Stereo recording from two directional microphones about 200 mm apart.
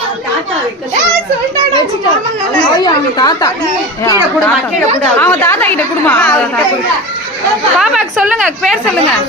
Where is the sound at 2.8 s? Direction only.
20° left (ahead or behind).